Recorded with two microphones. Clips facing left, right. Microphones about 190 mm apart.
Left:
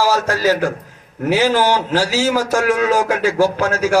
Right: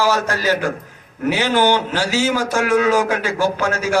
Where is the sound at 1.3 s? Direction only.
40° left (ahead or behind).